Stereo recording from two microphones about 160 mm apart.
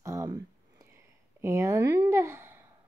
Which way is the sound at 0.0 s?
20° right (ahead or behind).